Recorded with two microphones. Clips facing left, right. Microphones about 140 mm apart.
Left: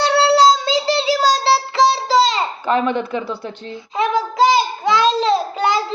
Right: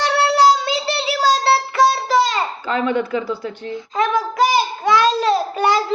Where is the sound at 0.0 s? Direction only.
25° left (ahead or behind).